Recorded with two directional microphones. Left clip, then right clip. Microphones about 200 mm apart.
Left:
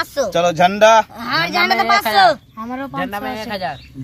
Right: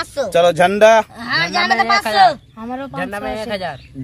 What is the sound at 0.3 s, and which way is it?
Speech, 60° right (ahead or behind).